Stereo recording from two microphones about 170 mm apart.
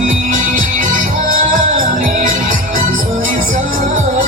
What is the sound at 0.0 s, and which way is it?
Music, 50° right (ahead or behind).